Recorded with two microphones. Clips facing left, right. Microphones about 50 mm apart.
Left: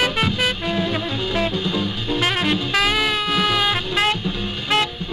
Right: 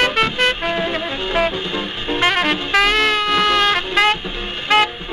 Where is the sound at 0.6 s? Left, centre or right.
Right.